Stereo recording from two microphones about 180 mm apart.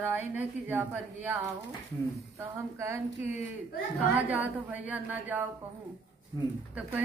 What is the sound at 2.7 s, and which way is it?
A woman's voice, 15° right (ahead or behind).